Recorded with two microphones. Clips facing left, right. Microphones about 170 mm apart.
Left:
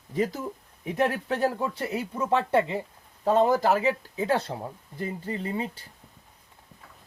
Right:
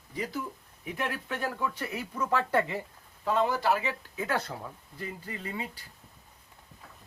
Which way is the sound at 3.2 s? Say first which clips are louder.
Left 6 dB; 40° left (ahead or behind).